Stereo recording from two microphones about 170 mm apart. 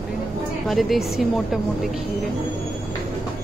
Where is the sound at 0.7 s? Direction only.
Centre (ahead or behind).